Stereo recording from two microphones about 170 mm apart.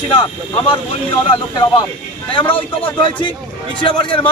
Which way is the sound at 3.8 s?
30° left (ahead or behind).